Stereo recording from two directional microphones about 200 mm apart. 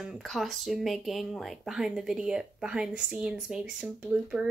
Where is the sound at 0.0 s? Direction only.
Centre (ahead or behind).